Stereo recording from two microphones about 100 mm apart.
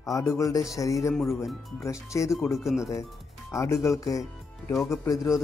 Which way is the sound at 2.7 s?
30° left (ahead or behind).